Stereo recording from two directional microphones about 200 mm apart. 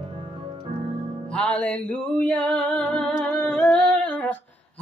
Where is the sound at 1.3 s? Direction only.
5° left (ahead or behind).